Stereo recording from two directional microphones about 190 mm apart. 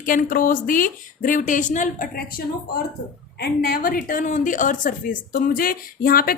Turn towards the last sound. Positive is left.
turn(degrees=50)  # may be behind; listen again after turning